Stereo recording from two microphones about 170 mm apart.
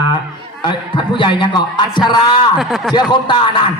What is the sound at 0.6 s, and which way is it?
Speech, 30° left (ahead or behind).